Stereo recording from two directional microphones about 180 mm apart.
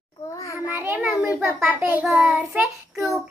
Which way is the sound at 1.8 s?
10° right (ahead or behind).